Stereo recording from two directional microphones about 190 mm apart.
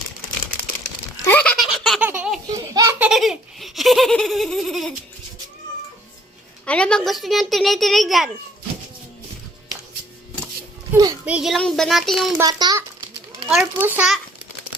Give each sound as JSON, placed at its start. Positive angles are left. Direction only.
{"t": 1.2, "sound": "baby laughter", "side_deg": 10}
{"t": 2.0, "sound": "laughter", "side_deg": -5}
{"t": 2.5, "sound": "a sound", "side_deg": -15}
{"t": 3.1, "sound": "giggle", "side_deg": 0}
{"t": 6.7, "sound": "a child's voice", "side_deg": 5}
{"t": 11.3, "sound": "a child's voice", "side_deg": -5}
{"t": 12.4, "sound": "a child's voice", "side_deg": -20}
{"t": 13.5, "sound": "a child's voice", "side_deg": -5}